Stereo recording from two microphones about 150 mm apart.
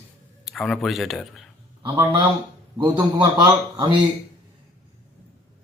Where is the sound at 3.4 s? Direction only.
30° right (ahead or behind).